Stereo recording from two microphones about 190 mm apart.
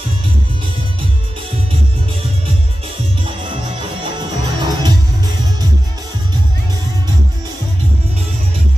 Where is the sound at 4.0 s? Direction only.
25° right (ahead or behind).